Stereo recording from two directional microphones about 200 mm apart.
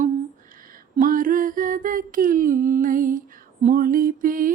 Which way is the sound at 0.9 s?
45° right (ahead or behind).